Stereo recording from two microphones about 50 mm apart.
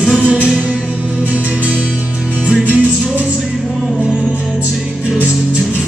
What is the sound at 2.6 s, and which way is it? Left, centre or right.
Music, right.